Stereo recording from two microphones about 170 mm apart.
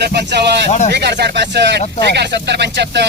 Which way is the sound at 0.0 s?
75° right (ahead or behind).